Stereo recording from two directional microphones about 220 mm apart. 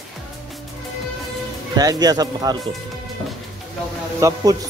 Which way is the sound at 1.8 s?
15° right (ahead or behind).